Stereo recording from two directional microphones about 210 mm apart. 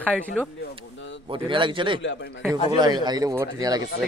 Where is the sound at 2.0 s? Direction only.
60° left (ahead or behind).